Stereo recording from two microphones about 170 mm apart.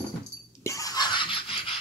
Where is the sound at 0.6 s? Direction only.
20° left (ahead or behind).